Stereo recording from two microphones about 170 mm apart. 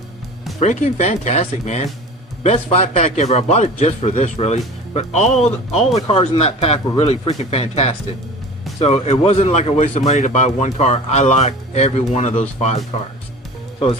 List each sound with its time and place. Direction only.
0.6 s speech: 45° left (ahead or behind)